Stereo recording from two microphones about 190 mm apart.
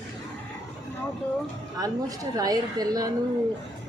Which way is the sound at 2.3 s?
20° right (ahead or behind).